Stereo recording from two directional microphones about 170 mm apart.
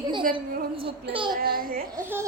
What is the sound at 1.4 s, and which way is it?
Speech, 60° right (ahead or behind).